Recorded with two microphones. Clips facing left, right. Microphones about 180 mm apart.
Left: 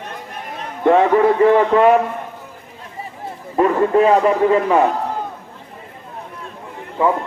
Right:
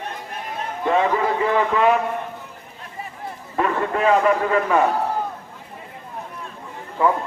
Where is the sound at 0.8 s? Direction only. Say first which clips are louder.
Left 7 dB; 55° left (ahead or behind).